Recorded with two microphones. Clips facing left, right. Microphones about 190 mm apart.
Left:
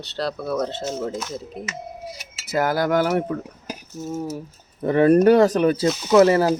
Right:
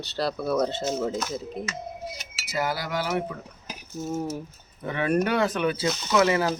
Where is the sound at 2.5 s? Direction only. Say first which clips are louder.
Left 8 dB; 50° left (ahead or behind).